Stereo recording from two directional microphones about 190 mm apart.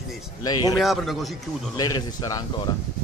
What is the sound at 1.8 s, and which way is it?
Speech, 20° left (ahead or behind).